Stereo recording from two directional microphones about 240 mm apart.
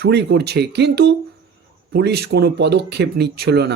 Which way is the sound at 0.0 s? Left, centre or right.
Right.